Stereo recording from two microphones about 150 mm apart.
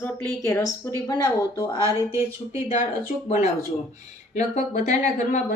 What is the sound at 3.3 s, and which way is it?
Speech, 45° left (ahead or behind).